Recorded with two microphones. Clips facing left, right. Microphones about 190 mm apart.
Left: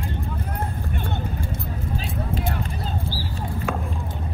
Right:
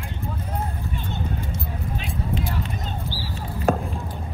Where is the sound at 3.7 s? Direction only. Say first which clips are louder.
Right 8 dB; 35° right (ahead or behind).